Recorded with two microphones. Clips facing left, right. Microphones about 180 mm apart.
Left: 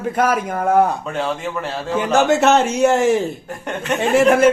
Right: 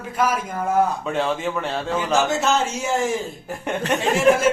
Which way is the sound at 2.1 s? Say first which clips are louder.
Left 7 dB; 65° left (ahead or behind).